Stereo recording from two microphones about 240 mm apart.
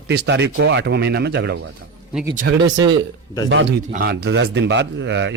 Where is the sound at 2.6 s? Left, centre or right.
Right.